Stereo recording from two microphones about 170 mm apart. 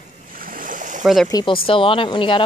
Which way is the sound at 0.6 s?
50° right (ahead or behind).